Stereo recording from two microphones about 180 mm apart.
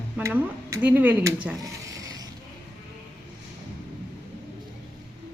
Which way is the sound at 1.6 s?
20° right (ahead or behind).